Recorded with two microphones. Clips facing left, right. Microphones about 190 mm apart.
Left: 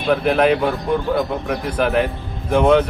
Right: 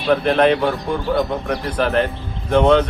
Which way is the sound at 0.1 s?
5° left (ahead or behind).